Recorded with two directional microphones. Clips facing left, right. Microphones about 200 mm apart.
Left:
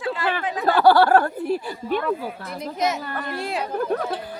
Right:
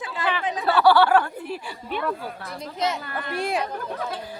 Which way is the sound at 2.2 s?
15° left (ahead or behind).